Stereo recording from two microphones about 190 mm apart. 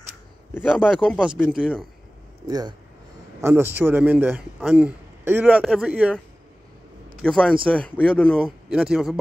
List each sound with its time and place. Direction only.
0.6 s speech: 5° left (ahead or behind)
2.4 s a man's voice: 20° right (ahead or behind); by 6.1 s 5° right (ahead or behind)
7.2 s speech: 5° left (ahead or behind)